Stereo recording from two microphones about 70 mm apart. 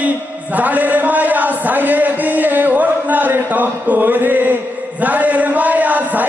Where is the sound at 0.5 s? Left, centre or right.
Right.